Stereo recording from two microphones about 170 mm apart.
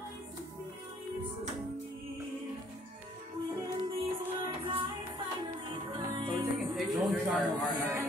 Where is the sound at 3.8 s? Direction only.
35° right (ahead or behind).